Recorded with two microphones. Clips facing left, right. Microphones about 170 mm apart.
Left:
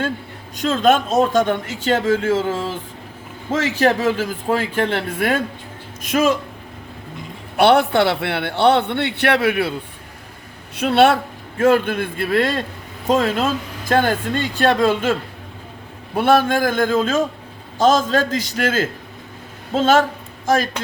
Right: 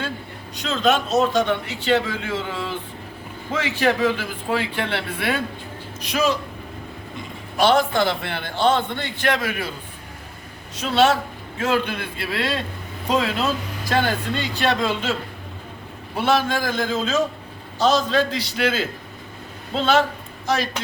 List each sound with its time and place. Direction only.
0.5 s speech: 45° left (ahead or behind)
7.5 s a man's voice: 65° left (ahead or behind)
10.8 s speech: 60° left (ahead or behind)
16.1 s speech: 55° left (ahead or behind)